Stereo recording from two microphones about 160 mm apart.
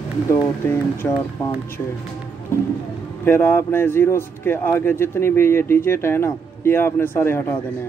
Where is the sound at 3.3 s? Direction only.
15° left (ahead or behind).